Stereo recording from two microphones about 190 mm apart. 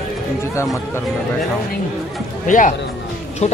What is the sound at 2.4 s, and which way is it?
A woman's voice, 40° left (ahead or behind).